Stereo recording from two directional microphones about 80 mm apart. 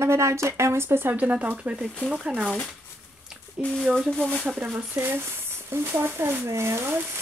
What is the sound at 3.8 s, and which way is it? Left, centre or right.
Speech, centre.